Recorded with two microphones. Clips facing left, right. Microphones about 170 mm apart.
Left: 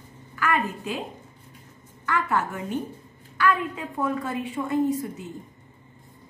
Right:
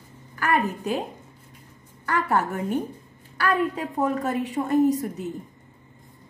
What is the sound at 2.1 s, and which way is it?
A woman's voice, 40° right (ahead or behind).